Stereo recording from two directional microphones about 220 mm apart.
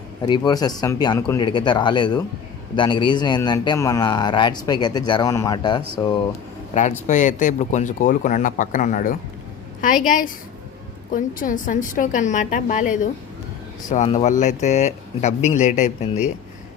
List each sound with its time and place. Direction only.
0.2 s a man's voice: 20° left (ahead or behind)
6.7 s speech: 30° left (ahead or behind)